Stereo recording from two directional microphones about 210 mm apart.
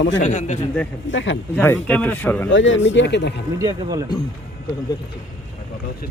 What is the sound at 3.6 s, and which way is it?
Speech, 15° right (ahead or behind).